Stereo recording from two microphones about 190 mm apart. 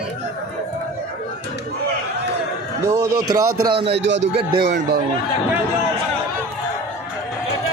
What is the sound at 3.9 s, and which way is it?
A man's voice, 65° right (ahead or behind).